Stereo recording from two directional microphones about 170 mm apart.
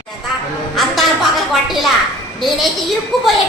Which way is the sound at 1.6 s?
Centre (ahead or behind).